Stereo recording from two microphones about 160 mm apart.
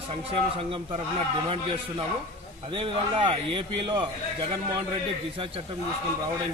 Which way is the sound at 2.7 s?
35° right (ahead or behind).